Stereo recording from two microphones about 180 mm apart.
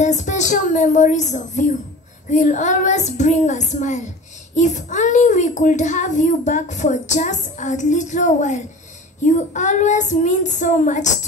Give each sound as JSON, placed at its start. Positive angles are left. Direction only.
{"t": 0.0, "sound": "a child's voice", "side_deg": 40}